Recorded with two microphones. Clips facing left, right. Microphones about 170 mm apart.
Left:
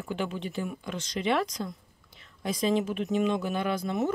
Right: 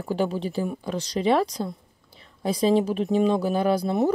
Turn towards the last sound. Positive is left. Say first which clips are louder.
# right 7 dB
turn(degrees=-35)  # may be behind; listen again after turning